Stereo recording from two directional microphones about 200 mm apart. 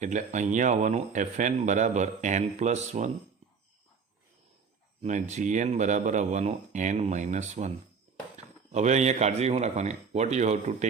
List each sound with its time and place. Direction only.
0.0 s speech: 35° right (ahead or behind)
5.0 s speech: 35° right (ahead or behind)
8.7 s speech: 35° right (ahead or behind)